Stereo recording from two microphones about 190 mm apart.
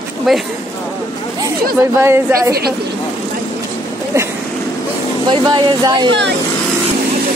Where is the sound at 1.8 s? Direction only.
10° right (ahead or behind).